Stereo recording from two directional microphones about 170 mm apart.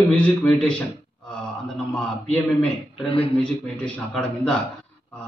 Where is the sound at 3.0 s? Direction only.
35° left (ahead or behind).